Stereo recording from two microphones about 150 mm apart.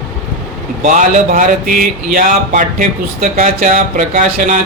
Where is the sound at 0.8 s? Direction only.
60° right (ahead or behind).